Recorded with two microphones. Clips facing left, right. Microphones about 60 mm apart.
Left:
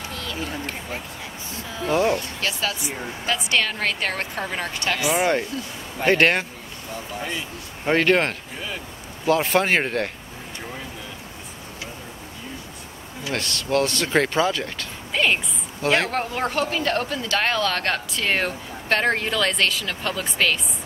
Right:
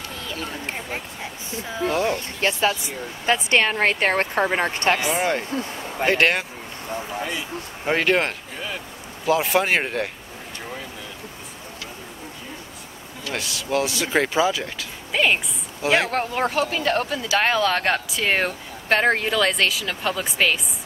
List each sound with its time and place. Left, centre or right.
0.1 s a sound: centre
0.7 s speech: right
1.9 s speech: centre
2.1 s a woman's voice: right
6.0 s speech: centre
13.3 s speech: centre